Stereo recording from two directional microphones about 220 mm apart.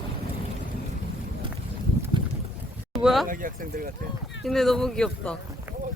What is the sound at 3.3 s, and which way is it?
Speech, 40° right (ahead or behind).